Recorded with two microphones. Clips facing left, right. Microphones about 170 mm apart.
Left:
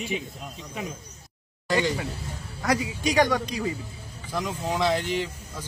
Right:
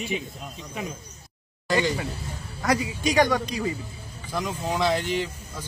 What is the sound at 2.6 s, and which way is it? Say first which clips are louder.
Speech: right 1 dB; 45° right (ahead or behind).